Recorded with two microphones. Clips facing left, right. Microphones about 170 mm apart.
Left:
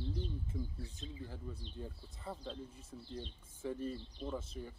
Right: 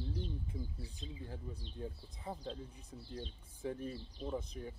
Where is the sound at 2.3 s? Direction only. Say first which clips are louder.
Right 1 dB; 15° right (ahead or behind).